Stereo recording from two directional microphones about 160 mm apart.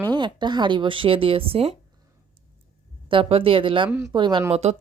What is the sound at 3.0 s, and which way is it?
Speech, 35° right (ahead or behind).